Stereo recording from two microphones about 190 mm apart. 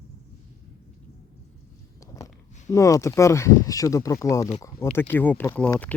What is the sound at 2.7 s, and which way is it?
Speech, 15° left (ahead or behind).